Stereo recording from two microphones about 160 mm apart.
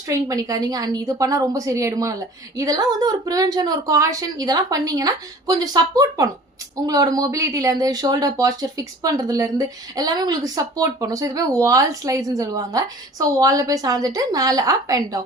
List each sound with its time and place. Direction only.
0.1 s a woman's voice: 20° right (ahead or behind)